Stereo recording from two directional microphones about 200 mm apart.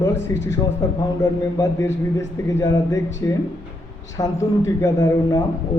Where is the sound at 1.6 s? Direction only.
15° left (ahead or behind).